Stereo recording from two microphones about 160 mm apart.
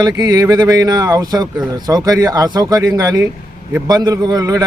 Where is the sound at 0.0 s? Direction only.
25° right (ahead or behind).